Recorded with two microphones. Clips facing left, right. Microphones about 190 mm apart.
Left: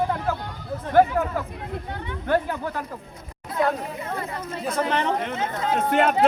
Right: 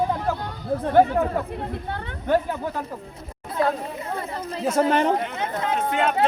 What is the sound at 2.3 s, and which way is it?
Speech, 15° right (ahead or behind).